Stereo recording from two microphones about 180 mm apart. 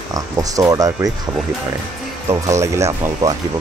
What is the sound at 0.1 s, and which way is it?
Speech, 20° right (ahead or behind).